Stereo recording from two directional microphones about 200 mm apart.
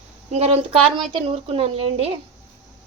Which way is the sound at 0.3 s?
30° right (ahead or behind).